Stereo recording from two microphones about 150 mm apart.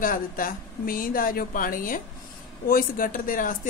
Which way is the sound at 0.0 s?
65° left (ahead or behind).